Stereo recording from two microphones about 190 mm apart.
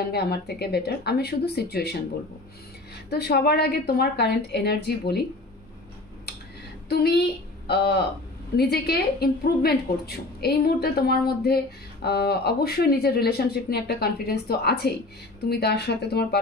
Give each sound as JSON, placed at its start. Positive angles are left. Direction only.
{"t": 0.1, "sound": "a woman's voice", "side_deg": 55}
{"t": 3.1, "sound": "a woman's voice", "side_deg": 60}
{"t": 6.9, "sound": "a woman's voice", "side_deg": 55}